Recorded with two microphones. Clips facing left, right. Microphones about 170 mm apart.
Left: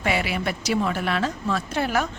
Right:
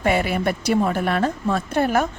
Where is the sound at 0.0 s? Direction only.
45° right (ahead or behind).